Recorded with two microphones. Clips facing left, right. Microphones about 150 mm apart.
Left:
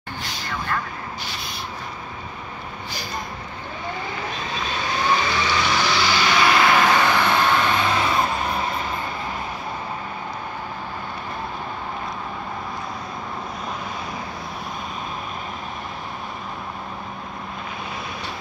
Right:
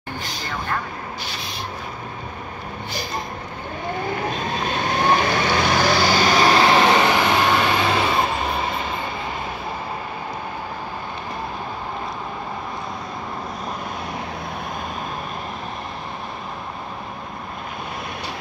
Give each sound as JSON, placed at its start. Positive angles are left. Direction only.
{"t": 4.6, "sound": "vehicle", "side_deg": -55}